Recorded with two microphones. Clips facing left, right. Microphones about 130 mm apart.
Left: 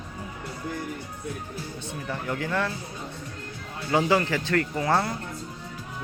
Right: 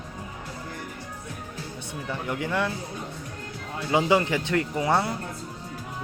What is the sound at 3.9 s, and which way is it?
Speech, 15° right (ahead or behind).